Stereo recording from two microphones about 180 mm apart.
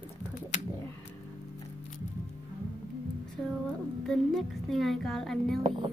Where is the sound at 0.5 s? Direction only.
40° left (ahead or behind).